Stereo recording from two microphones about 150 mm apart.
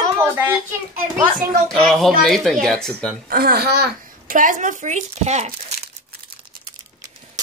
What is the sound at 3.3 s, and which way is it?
A child's voice, 90° right.